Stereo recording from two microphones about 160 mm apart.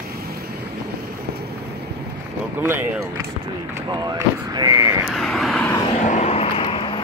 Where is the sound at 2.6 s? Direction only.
15° right (ahead or behind).